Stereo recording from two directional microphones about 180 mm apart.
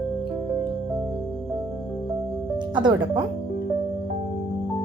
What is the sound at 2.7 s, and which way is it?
Speech, 25° right (ahead or behind).